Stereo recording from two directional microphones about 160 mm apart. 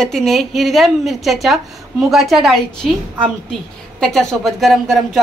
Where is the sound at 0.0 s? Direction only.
Centre (ahead or behind).